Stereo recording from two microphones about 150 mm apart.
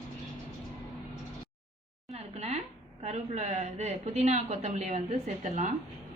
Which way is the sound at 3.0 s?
50° right (ahead or behind).